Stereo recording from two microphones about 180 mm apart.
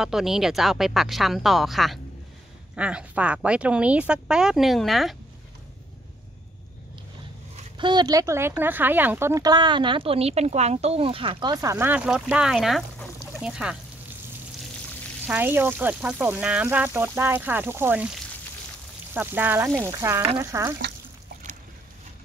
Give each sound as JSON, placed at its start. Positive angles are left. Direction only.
{"t": 0.0, "sound": "speech", "side_deg": 0}
{"t": 7.5, "sound": "speech", "side_deg": -25}
{"t": 15.2, "sound": "speech", "side_deg": -10}
{"t": 19.1, "sound": "speech", "side_deg": -10}